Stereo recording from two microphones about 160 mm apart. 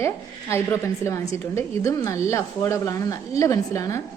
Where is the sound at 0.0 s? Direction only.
15° left (ahead or behind).